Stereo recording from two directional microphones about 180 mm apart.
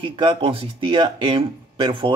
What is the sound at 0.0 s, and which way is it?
Speech, 25° right (ahead or behind).